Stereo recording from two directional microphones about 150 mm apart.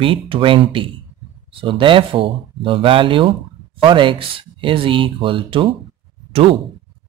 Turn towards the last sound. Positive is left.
turn(degrees=-35)  # may be behind; listen again after turning